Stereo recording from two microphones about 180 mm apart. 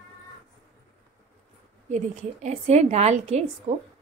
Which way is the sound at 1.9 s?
40° right (ahead or behind).